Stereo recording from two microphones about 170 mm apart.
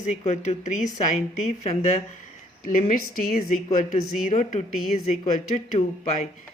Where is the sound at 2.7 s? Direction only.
55° left (ahead or behind).